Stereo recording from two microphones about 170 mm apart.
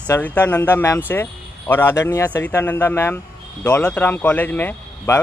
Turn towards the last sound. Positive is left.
turn(degrees=10)  # may be behind; listen again after turning